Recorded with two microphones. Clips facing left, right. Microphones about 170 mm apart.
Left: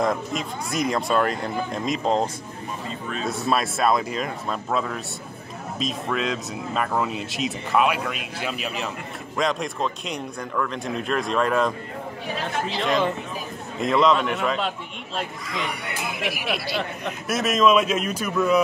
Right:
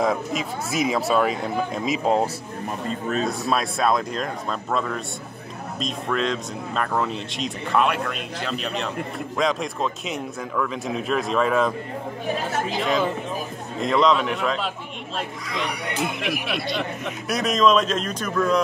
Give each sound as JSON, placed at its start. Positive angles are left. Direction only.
{"t": 0.0, "sound": "speech", "side_deg": 0}
{"t": 3.3, "sound": "speech", "side_deg": 0}
{"t": 12.8, "sound": "speech", "side_deg": 0}